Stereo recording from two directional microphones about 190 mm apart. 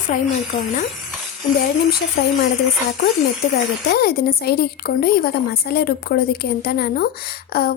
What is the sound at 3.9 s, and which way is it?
A woman's voice, 55° left (ahead or behind).